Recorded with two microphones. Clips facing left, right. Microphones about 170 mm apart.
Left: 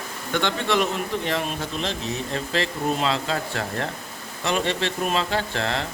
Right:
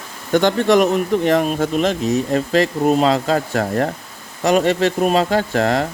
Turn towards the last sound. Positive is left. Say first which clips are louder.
# right 9 dB
turn(degrees=-45)  # may be behind; listen again after turning